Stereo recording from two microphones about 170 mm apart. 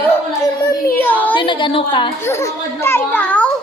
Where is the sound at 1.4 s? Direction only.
30° left (ahead or behind).